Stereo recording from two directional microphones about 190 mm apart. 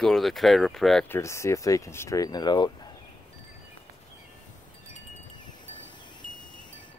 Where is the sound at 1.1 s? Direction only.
15° left (ahead or behind).